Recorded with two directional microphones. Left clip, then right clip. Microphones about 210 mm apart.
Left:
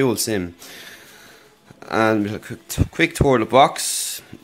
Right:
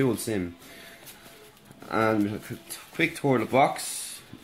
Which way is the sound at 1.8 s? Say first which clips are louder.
Left 6 dB; 45° left (ahead or behind).